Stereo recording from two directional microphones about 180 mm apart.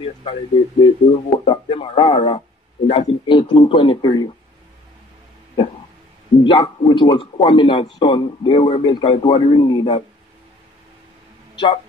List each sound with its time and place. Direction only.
0.0 s speech: 30° left (ahead or behind)
6.4 s speech: 25° left (ahead or behind)
11.5 s speech: 30° left (ahead or behind)